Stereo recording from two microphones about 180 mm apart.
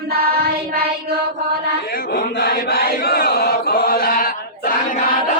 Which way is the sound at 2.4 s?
60° left (ahead or behind).